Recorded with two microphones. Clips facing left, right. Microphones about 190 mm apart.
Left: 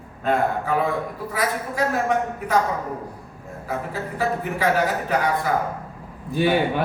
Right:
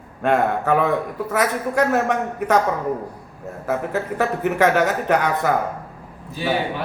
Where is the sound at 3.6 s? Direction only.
75° right (ahead or behind).